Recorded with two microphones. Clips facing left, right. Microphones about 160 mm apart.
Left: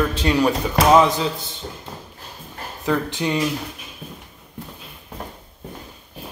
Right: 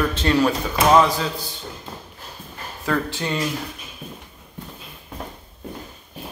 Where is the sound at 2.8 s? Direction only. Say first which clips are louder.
Left 2 dB; 15° left (ahead or behind).